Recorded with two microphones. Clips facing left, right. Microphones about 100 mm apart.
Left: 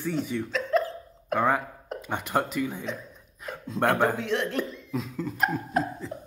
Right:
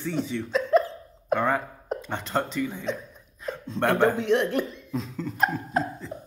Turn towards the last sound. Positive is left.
turn(degrees=0)  # may be behind; listen again after turning